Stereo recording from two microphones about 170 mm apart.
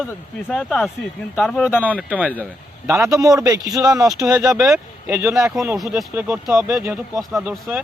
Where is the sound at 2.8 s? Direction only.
15° right (ahead or behind).